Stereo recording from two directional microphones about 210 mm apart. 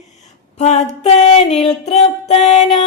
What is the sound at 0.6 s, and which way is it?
Female singing, 30° left (ahead or behind).